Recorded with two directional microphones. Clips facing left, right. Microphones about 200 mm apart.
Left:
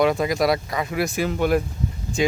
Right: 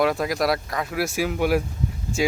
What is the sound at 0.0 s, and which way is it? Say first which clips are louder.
Speech: left 2 dB; centre (ahead or behind).